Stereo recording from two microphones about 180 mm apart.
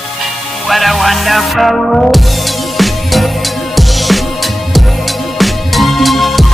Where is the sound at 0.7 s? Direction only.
Centre (ahead or behind).